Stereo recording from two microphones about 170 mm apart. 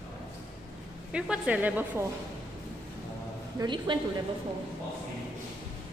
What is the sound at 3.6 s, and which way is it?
Speech, 25° right (ahead or behind).